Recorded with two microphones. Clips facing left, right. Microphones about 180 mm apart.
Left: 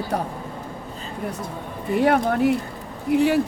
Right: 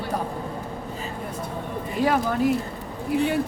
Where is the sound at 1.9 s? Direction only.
60° left (ahead or behind).